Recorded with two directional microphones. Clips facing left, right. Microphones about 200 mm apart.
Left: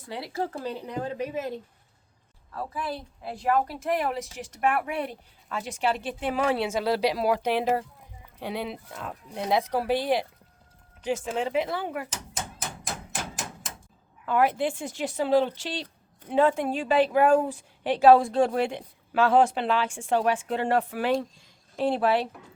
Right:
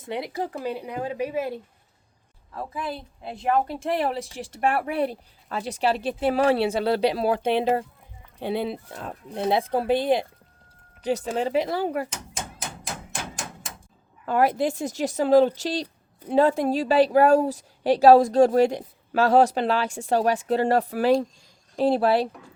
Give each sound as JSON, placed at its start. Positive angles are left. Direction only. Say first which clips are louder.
{"t": 0.0, "sound": "speech", "louder": "right 2 dB", "side_deg": -20}
{"t": 2.7, "sound": "a woman's voice", "louder": "right 2 dB", "side_deg": -20}
{"t": 11.0, "sound": "a woman's voice", "louder": "right 3 dB", "side_deg": -35}
{"t": 14.3, "sound": "a woman's voice", "louder": "right 2 dB", "side_deg": -40}